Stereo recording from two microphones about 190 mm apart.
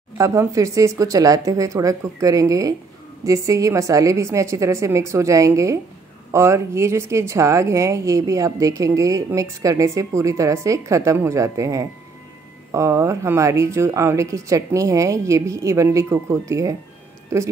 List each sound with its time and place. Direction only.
0.2 s speech: 15° right (ahead or behind)